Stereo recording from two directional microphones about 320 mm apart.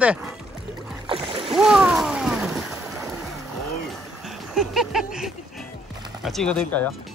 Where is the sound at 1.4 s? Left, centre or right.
Centre.